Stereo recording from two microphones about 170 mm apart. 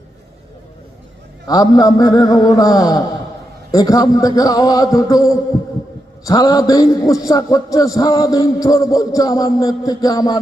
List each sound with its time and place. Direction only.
1.5 s a man's voice: 20° left (ahead or behind)